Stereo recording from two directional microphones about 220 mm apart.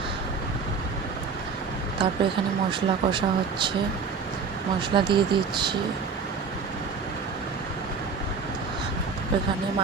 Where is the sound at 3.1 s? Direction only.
20° right (ahead or behind).